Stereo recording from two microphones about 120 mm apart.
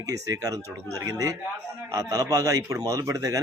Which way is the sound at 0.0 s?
30° right (ahead or behind).